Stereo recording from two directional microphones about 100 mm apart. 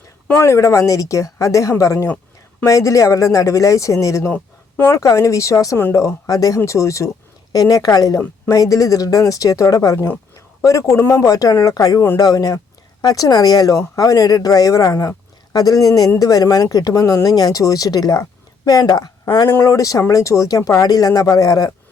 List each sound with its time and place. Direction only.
0.3 s a man's voice: 25° left (ahead or behind); by 19.1 s 40° left (ahead or behind)
19.5 s a man's voice: 30° left (ahead or behind)